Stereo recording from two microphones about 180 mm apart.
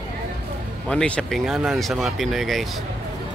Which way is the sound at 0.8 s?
5° left (ahead or behind).